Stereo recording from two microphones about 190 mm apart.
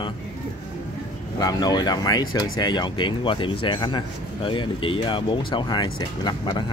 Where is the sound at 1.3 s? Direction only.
20° left (ahead or behind).